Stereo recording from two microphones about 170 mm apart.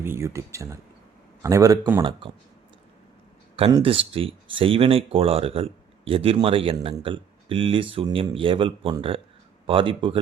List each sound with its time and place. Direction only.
0.0 s a man's voice: 15° right (ahead or behind); by 2.3 s 30° right (ahead or behind)
3.8 s speech: 35° right (ahead or behind)